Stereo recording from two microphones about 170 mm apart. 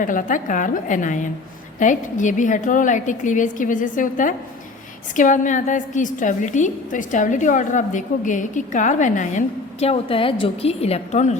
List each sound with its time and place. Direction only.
0.0 s a woman's voice: 50° left (ahead or behind)
9.8 s a woman's voice: 35° left (ahead or behind)